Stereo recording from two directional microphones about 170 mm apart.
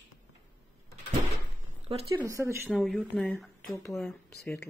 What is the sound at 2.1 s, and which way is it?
Speech, 20° right (ahead or behind).